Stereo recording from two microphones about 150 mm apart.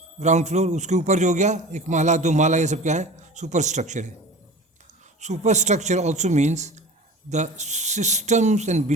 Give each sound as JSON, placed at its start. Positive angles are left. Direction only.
{"t": 0.2, "sound": "a man's voice", "side_deg": -50}
{"t": 5.2, "sound": "a man's voice", "side_deg": -50}